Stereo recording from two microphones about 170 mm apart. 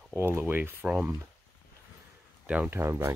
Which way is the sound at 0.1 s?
15° right (ahead or behind).